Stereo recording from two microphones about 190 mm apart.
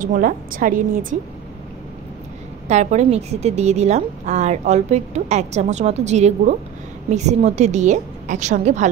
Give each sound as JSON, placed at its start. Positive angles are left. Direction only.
{"t": 0.0, "sound": "a woman's voice", "side_deg": -45}
{"t": 2.7, "sound": "a woman's voice", "side_deg": -35}